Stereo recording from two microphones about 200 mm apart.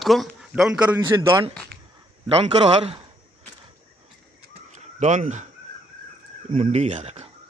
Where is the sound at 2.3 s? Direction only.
30° right (ahead or behind).